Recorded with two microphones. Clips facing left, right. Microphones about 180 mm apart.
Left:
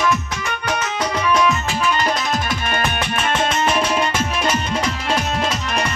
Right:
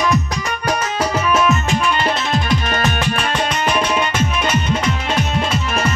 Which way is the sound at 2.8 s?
20° left (ahead or behind).